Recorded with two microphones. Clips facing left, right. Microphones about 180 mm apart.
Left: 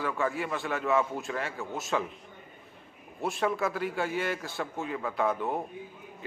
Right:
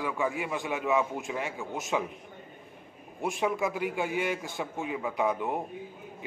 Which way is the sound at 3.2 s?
15° right (ahead or behind).